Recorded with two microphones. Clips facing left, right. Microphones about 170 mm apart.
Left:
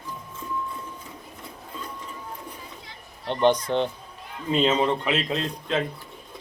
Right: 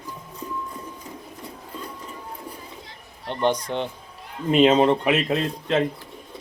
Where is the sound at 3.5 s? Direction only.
10° right (ahead or behind).